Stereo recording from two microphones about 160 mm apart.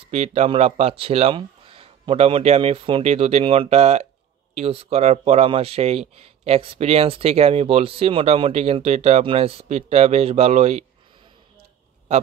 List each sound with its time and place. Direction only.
0.0 s speech: 40° right (ahead or behind)